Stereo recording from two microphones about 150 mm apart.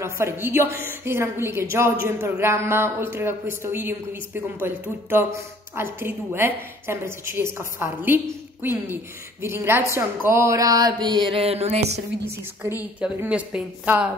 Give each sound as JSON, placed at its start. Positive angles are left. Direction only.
{"t": 0.0, "sound": "a woman's voice", "side_deg": -15}
{"t": 9.9, "sound": "a sound", "side_deg": -15}
{"t": 12.6, "sound": "a woman's voice", "side_deg": -15}